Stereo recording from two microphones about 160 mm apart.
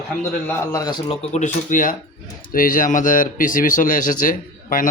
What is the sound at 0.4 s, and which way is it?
Speech, 20° left (ahead or behind).